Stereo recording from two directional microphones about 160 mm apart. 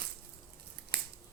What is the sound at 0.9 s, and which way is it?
Scissors, 70° right (ahead or behind).